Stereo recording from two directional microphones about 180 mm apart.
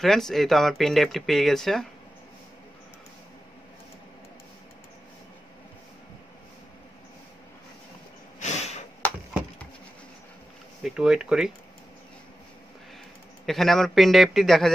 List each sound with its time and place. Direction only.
0.0 s speech: centre (ahead or behind)
8.4 s sniff: 40° left (ahead or behind)
10.8 s speech: 5° right (ahead or behind)
13.5 s speech: centre (ahead or behind)